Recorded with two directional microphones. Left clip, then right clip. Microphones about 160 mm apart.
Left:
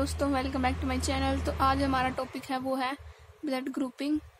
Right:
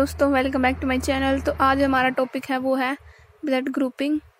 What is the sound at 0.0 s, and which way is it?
A woman's voice, 40° right (ahead or behind).